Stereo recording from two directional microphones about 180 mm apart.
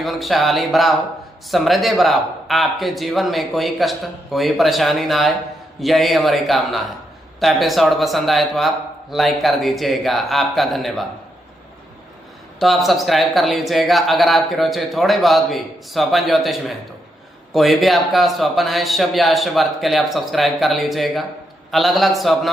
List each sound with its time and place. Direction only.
0.0 s speech: centre (ahead or behind)
12.5 s speech: centre (ahead or behind)